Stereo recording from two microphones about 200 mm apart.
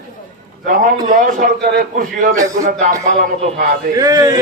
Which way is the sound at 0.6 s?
40° right (ahead or behind).